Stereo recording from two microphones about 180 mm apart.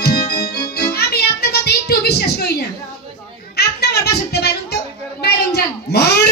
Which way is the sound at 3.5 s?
65° left (ahead or behind).